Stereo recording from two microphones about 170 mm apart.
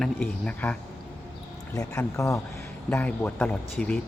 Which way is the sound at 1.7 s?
20° left (ahead or behind).